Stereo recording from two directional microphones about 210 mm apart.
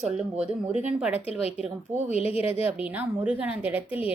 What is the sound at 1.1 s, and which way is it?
Speech, 30° left (ahead or behind).